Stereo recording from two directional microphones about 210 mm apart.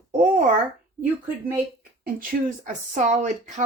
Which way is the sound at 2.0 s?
40° right (ahead or behind).